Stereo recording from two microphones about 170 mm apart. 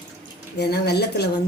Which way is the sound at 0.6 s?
75° left (ahead or behind).